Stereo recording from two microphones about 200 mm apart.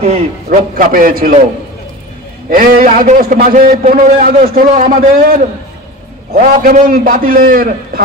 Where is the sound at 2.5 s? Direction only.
45° right (ahead or behind).